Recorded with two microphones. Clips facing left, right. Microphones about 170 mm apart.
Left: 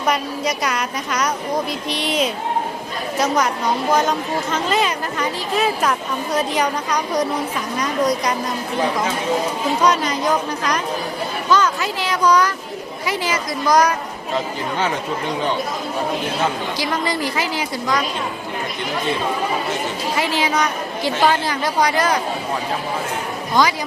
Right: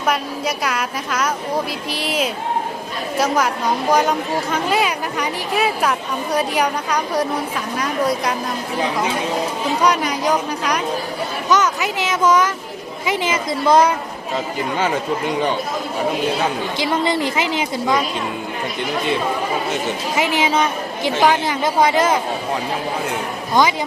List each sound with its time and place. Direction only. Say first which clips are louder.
0.0 s a woman's voice: even; 5° right (ahead or behind)
3.3 s a woman's voice: even; 10° right (ahead or behind)
9.8 s a woman's voice: even; 10° right (ahead or behind); by 13.9 s 25° right (ahead or behind)
16.7 s speech: right 3 dB; 20° right (ahead or behind)
20.1 s speech: right 2 dB; 20° right (ahead or behind)
23.6 s speech: right 1 dB; 20° right (ahead or behind)